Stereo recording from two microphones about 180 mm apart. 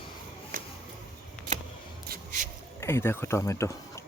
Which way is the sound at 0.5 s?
50° right (ahead or behind).